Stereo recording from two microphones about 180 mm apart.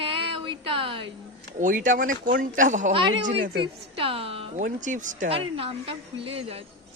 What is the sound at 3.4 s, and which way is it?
Speech, 65° right (ahead or behind).